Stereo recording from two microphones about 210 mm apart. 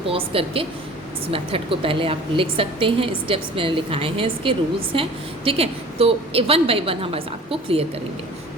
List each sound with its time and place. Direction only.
0.0 s a woman's voice: 25° right (ahead or behind)